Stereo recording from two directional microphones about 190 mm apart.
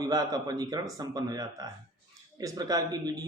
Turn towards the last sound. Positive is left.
turn(degrees=-20)  # may be behind; listen again after turning